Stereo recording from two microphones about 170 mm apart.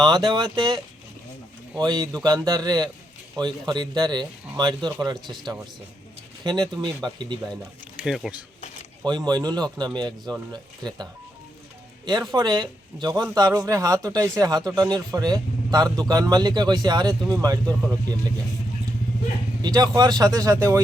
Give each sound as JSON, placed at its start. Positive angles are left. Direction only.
{"t": 0.0, "sound": "speech", "side_deg": -25}
{"t": 5.2, "sound": "speech", "side_deg": 0}
{"t": 6.4, "sound": "speech", "side_deg": -25}
{"t": 8.0, "sound": "speech", "side_deg": 0}
{"t": 9.0, "sound": "speech", "side_deg": -25}
{"t": 19.6, "sound": "speech", "side_deg": -25}